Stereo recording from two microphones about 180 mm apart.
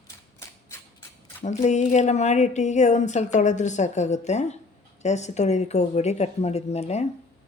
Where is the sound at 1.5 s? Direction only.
40° left (ahead or behind).